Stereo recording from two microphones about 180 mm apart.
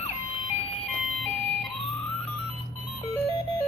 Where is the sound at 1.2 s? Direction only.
5° left (ahead or behind).